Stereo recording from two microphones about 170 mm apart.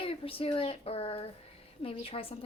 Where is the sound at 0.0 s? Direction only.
30° left (ahead or behind).